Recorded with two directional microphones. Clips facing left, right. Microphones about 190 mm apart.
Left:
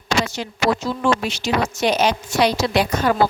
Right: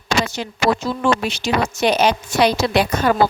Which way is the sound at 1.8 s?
60° right (ahead or behind).